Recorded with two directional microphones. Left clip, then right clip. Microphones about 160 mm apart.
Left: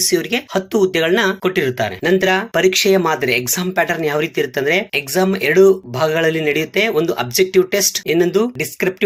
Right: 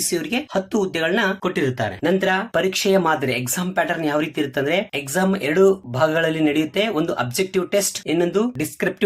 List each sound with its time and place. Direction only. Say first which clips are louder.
0.1 s speech: left 5 dB; 5° left (ahead or behind)